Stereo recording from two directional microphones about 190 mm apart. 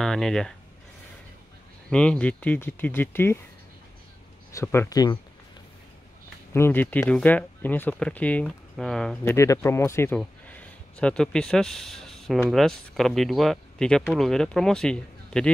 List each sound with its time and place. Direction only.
0.0 s speech: centre (ahead or behind)
1.9 s speech: 5° left (ahead or behind)
4.5 s speech: 15° left (ahead or behind)
6.5 s speech: 10° left (ahead or behind)
9.2 s speech: 15° left (ahead or behind)